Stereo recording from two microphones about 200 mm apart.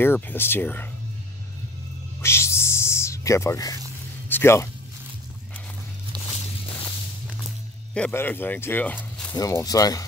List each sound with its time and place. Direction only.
0.0 s speech: 10° left (ahead or behind)
2.2 s a sound: 15° left (ahead or behind)
4.3 s speech: 15° left (ahead or behind)
6.1 s walk: 20° right (ahead or behind)
7.9 s speech: 10° left (ahead or behind)